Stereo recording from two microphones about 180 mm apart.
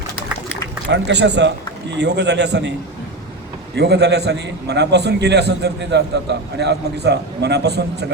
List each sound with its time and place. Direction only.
0.9 s a man's voice: 75° right (ahead or behind)
3.8 s a man's voice: 70° right (ahead or behind)